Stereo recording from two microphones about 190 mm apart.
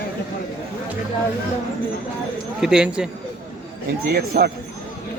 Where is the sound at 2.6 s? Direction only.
5° right (ahead or behind).